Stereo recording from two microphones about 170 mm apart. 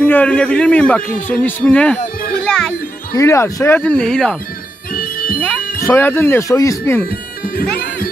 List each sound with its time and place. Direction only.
0.0 s speech: 10° left (ahead or behind)
2.4 s children playing: 5° left (ahead or behind)
3.2 s speech: 20° left (ahead or behind)
4.9 s bagpipes: 55° left (ahead or behind)
5.8 s speech: 15° left (ahead or behind)
7.1 s music: 60° left (ahead or behind)